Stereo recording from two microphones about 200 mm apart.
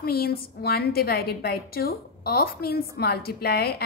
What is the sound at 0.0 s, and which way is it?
A woman's voice, 50° left (ahead or behind).